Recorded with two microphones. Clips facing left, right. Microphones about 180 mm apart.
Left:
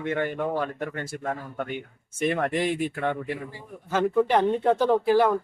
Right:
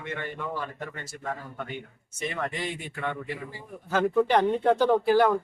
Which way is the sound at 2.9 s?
45° left (ahead or behind).